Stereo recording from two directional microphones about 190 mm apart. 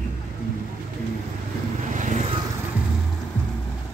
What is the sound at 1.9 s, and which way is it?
Vehicle, 40° right (ahead or behind).